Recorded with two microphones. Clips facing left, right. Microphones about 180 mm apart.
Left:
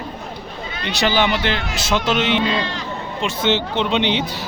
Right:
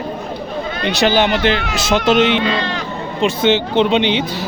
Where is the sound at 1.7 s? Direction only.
70° right (ahead or behind).